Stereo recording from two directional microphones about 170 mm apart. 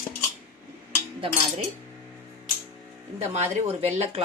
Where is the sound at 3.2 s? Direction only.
40° right (ahead or behind).